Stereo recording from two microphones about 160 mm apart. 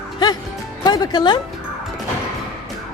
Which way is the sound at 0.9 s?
25° left (ahead or behind).